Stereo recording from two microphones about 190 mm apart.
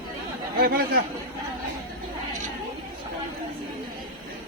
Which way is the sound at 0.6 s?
55° right (ahead or behind).